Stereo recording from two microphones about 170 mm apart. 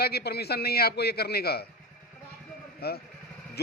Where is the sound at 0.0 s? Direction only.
70° left (ahead or behind).